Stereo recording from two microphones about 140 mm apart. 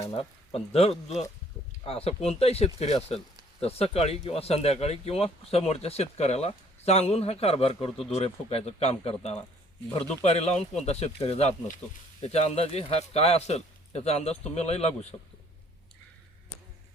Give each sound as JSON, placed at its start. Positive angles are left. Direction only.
{"t": 0.1, "sound": "speech", "side_deg": 40}